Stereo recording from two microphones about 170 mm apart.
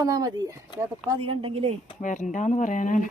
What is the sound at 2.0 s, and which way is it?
Speech, 45° left (ahead or behind).